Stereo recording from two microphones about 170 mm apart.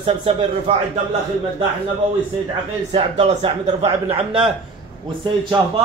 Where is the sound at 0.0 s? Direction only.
35° right (ahead or behind).